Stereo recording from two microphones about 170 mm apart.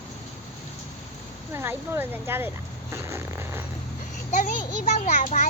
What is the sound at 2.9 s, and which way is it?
Zipper, 15° right (ahead or behind).